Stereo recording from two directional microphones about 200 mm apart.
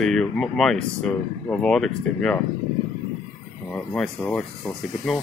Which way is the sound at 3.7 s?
5° left (ahead or behind).